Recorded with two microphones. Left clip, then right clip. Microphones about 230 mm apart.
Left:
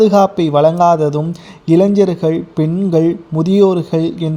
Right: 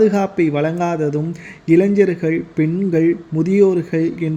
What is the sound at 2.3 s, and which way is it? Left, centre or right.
Speech, left.